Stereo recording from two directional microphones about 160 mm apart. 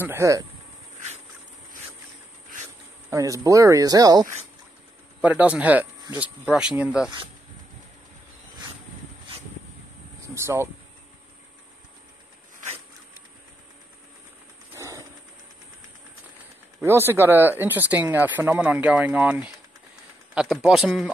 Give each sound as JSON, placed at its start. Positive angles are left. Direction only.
{"t": 0.0, "sound": "speech", "side_deg": -15}
{"t": 3.1, "sound": "speech", "side_deg": -20}
{"t": 5.2, "sound": "speech", "side_deg": -10}
{"t": 10.2, "sound": "speech", "side_deg": -15}
{"t": 14.8, "sound": "a sound", "side_deg": -20}
{"t": 16.8, "sound": "a man's voice", "side_deg": -15}